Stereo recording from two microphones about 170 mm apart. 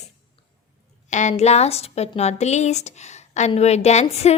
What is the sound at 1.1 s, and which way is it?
A woman's voice, 45° left (ahead or behind).